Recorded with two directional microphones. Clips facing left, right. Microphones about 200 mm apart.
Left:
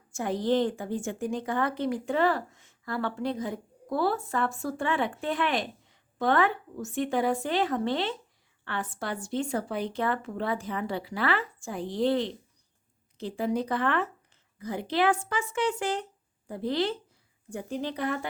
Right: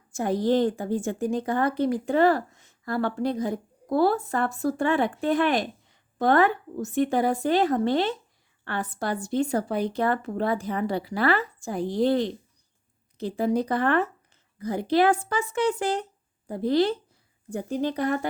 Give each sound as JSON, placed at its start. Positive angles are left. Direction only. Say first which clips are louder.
{"t": 0.1, "sound": "a woman's voice", "louder": "right 3 dB", "side_deg": -40}